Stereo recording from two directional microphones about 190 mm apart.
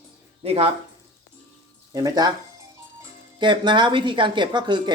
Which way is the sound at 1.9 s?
20° right (ahead or behind).